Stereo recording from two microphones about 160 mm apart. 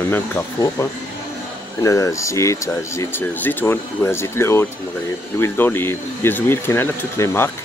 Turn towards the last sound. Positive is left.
turn(degrees=15)  # may be behind; listen again after turning